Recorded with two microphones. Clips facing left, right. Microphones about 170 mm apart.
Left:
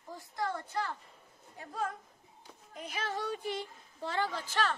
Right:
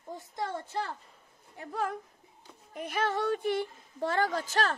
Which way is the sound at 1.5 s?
65° right (ahead or behind).